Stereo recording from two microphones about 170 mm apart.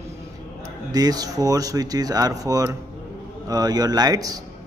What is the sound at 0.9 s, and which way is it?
Mantra, 20° right (ahead or behind).